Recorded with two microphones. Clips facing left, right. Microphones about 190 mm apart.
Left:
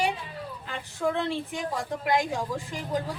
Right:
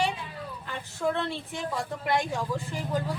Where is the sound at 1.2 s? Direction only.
15° left (ahead or behind).